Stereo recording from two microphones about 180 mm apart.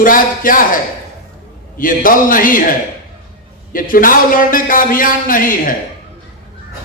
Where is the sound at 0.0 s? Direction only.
50° left (ahead or behind).